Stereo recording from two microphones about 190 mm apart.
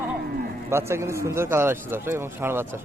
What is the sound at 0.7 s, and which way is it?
A man's voice, 15° right (ahead or behind).